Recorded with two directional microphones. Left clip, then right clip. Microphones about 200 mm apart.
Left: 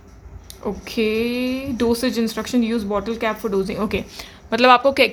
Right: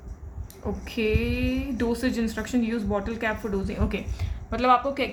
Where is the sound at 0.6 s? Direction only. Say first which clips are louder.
Left 5 dB; 45° left (ahead or behind).